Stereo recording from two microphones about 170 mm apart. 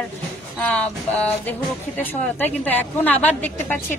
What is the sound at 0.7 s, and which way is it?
Speech, 5° left (ahead or behind).